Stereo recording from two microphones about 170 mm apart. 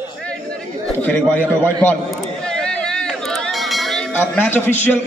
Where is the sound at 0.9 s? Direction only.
10° left (ahead or behind).